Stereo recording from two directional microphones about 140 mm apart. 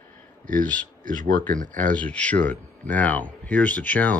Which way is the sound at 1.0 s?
70° right (ahead or behind).